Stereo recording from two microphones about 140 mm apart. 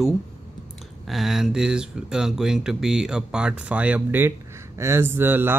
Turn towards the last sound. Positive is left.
turn(degrees=-15)  # may be behind; listen again after turning